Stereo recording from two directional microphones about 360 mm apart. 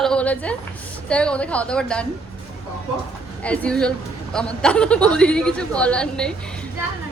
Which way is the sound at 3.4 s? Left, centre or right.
Centre.